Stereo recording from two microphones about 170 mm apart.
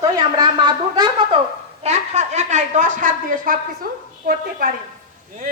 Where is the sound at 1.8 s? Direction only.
40° right (ahead or behind).